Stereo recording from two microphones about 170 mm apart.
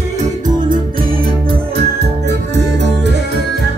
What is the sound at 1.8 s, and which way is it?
Music, 85° right.